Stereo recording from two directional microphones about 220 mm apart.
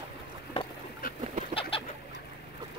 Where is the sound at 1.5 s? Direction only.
25° left (ahead or behind).